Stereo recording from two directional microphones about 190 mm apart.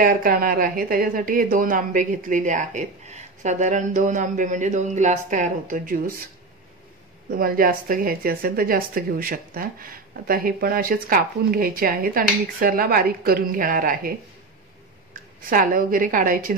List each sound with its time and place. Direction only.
0.0 s a woman's voice: 50° right (ahead or behind)
7.2 s a woman's voice: 50° right (ahead or behind)
15.5 s a woman's voice: 45° right (ahead or behind)